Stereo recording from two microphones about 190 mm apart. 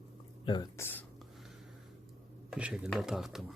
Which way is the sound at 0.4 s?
20° left (ahead or behind).